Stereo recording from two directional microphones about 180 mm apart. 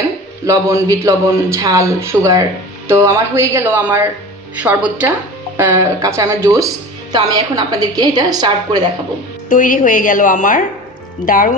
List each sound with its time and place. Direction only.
0.5 s a woman's voice: 15° right (ahead or behind)
9.5 s a woman's voice: 45° left (ahead or behind)